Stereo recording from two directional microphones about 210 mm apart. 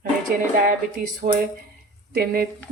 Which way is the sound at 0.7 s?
40° right (ahead or behind).